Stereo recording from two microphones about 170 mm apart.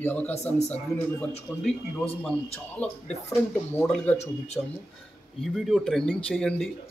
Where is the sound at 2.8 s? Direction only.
10° left (ahead or behind).